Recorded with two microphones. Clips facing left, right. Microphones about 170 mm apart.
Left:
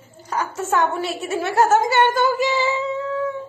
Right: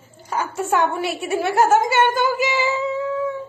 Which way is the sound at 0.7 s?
15° right (ahead or behind).